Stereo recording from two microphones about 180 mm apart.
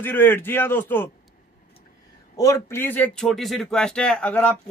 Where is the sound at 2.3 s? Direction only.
15° left (ahead or behind).